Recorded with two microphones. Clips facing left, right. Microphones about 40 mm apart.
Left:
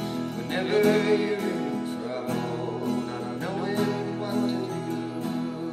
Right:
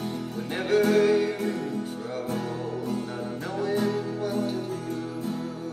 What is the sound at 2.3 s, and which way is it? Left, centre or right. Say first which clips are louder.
Music: left 2 dB; left.